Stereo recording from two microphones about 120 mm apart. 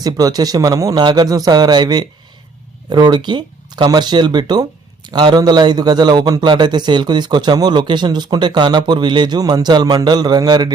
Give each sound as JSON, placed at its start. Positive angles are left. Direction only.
{"t": 0.0, "sound": "a man's voice", "side_deg": -30}